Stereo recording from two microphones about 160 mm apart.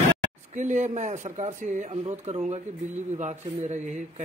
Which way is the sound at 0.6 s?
50° right (ahead or behind).